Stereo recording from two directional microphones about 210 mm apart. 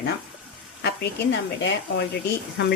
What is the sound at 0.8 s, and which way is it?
A woman's voice, 55° left (ahead or behind).